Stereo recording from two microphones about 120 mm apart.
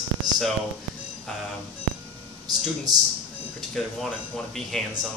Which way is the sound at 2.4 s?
35° right (ahead or behind).